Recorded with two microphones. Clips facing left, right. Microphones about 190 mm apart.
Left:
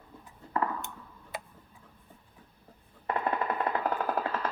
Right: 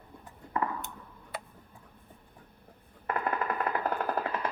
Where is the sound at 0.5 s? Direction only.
15° right (ahead or behind).